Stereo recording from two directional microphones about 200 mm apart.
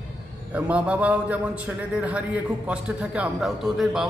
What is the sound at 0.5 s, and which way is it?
A man's voice, 5° right (ahead or behind).